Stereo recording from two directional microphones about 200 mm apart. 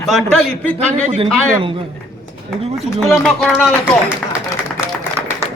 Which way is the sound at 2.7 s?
Centre (ahead or behind).